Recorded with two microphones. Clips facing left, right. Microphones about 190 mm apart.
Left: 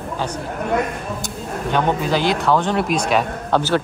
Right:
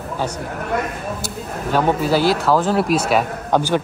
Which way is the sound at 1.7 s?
5° right (ahead or behind).